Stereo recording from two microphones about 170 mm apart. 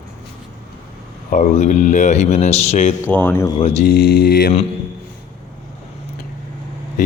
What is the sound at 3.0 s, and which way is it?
Speech, 10° left (ahead or behind).